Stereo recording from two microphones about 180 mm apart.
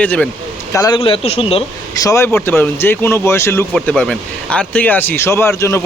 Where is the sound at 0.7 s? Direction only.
25° left (ahead or behind).